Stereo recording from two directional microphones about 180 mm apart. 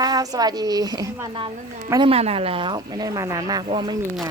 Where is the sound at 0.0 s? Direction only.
20° right (ahead or behind).